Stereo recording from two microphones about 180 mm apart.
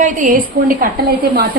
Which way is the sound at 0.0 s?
45° right (ahead or behind).